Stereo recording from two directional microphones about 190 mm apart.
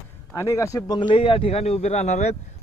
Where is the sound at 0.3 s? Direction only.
15° left (ahead or behind); by 2.3 s 35° left (ahead or behind).